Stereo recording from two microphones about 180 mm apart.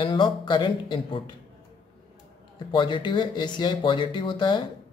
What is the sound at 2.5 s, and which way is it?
Speech, 25° left (ahead or behind).